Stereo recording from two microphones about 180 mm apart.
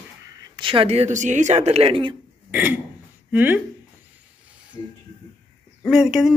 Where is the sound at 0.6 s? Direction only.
30° right (ahead or behind).